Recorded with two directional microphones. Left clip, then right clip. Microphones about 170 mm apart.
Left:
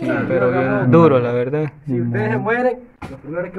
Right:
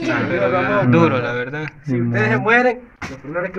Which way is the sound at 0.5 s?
90° left.